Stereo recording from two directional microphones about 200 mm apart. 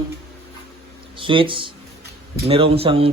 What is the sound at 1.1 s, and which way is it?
Speech, 25° right (ahead or behind).